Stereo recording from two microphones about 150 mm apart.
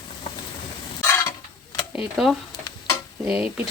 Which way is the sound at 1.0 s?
15° left (ahead or behind).